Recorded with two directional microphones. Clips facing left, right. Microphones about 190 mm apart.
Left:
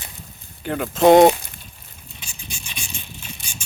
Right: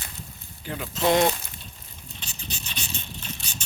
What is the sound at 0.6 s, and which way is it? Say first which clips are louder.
Speech: left 9 dB; 60° left (ahead or behind).